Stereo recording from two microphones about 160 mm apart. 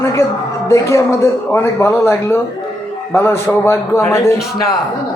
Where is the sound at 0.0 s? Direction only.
15° left (ahead or behind).